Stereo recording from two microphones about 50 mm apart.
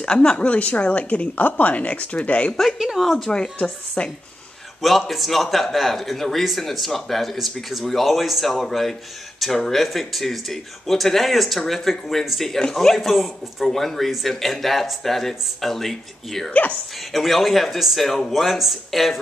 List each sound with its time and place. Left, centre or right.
0.0 s a woman's voice: centre
2.5 s speech: centre
3.3 s a woman's voice: left
4.8 s speech: centre